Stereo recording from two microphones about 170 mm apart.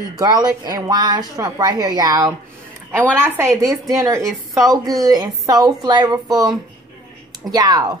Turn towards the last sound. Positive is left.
turn(degrees=-20)  # may be behind; listen again after turning